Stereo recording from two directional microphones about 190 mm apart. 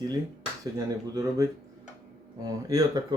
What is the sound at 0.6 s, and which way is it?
Speech, 20° right (ahead or behind).